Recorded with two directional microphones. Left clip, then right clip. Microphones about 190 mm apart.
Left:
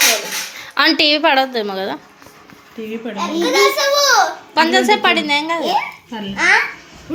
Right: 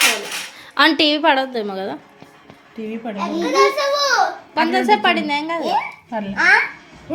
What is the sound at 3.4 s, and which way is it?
Speech, 30° left (ahead or behind).